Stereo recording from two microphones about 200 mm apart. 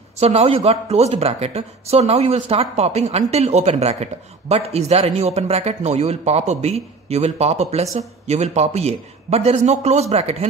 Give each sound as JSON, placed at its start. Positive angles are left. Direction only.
{"t": 0.2, "sound": "speech", "side_deg": -30}